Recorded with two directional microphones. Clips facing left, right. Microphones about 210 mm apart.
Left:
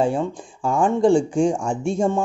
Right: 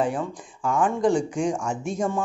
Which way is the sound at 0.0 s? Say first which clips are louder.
Left 4 dB; 30° left (ahead or behind).